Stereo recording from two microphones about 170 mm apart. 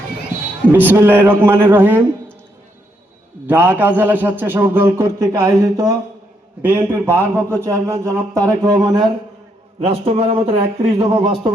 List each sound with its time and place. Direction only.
0.7 s a man's voice: 10° right (ahead or behind)
3.4 s a man's voice: 10° right (ahead or behind)
9.8 s speech: 35° right (ahead or behind)